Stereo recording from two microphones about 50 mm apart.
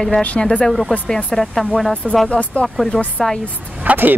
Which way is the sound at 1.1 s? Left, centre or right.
Centre.